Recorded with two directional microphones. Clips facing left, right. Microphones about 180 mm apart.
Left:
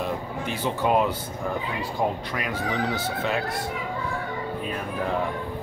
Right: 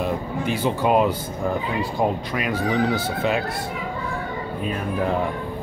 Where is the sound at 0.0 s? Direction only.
10° right (ahead or behind).